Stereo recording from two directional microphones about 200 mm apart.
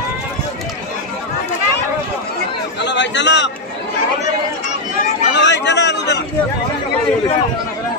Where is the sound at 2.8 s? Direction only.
60° left (ahead or behind).